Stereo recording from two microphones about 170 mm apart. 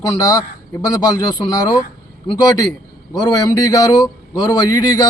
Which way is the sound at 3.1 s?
25° left (ahead or behind).